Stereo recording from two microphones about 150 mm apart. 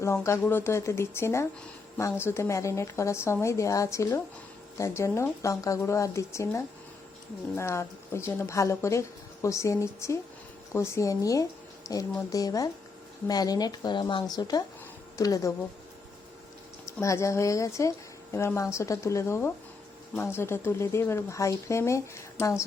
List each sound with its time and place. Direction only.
0.0 s speech: 20° left (ahead or behind)
17.0 s speech: 20° left (ahead or behind)